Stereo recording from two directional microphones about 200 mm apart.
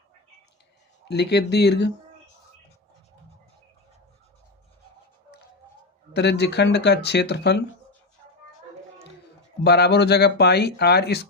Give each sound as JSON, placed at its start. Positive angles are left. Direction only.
{"t": 1.0, "sound": "speech", "side_deg": 55}
{"t": 6.1, "sound": "speech", "side_deg": 55}
{"t": 9.6, "sound": "speech", "side_deg": 55}